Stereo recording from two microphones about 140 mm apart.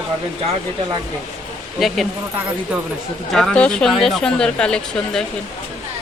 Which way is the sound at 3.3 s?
5° left (ahead or behind).